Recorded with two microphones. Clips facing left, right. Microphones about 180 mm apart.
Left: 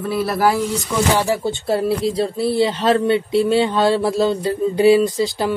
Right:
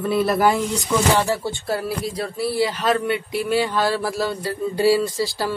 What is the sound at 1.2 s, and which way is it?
Speech, 20° left (ahead or behind).